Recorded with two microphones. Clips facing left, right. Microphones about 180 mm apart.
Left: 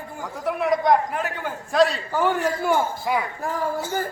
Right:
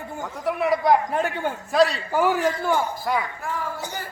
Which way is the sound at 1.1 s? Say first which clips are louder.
Right 4 dB; 30° right (ahead or behind).